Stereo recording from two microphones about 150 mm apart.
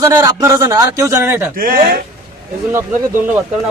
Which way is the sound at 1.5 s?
75° right (ahead or behind).